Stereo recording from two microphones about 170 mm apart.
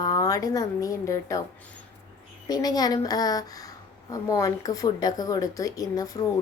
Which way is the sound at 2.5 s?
25° left (ahead or behind).